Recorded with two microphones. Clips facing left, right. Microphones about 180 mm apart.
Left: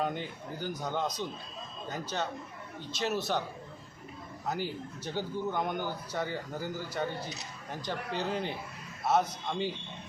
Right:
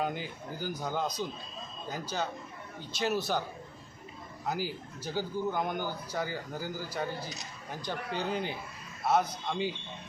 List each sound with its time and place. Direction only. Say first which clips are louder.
0.0 s speech: even; 5° right (ahead or behind)
4.4 s speech: even; 5° right (ahead or behind)